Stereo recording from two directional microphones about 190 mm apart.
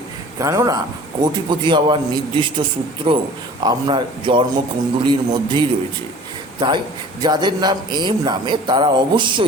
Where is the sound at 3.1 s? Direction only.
25° right (ahead or behind).